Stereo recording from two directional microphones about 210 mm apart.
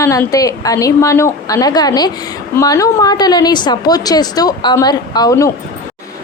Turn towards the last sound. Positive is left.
turn(degrees=15)  # may be behind; listen again after turning